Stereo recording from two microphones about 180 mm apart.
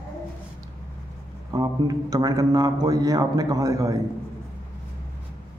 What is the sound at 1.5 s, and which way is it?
A man's voice, 20° right (ahead or behind).